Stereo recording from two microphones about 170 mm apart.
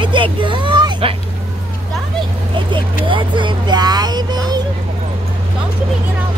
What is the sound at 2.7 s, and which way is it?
Vehicle, 30° right (ahead or behind).